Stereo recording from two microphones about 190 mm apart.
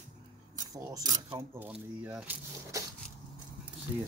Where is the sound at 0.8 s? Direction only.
20° right (ahead or behind).